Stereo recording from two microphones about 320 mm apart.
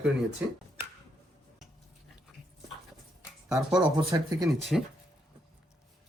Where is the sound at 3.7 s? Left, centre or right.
Centre.